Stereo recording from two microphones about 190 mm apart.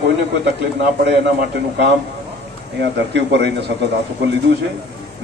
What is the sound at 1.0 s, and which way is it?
A man's voice, 60° right (ahead or behind).